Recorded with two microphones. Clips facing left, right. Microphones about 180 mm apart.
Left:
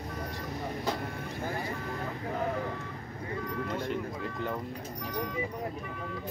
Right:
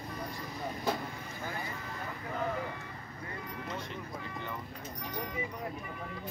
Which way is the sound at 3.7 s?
55° left (ahead or behind).